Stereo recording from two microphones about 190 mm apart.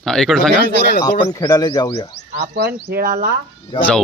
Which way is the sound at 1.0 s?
20° left (ahead or behind).